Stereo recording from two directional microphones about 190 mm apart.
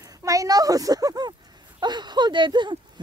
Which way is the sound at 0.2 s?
15° right (ahead or behind).